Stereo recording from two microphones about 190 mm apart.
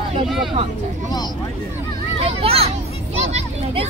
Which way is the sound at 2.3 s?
30° right (ahead or behind).